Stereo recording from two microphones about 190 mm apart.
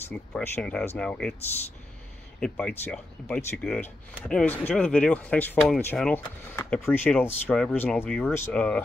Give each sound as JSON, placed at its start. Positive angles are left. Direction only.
{"t": 0.1, "sound": "speech", "side_deg": 5}
{"t": 2.4, "sound": "speech", "side_deg": 5}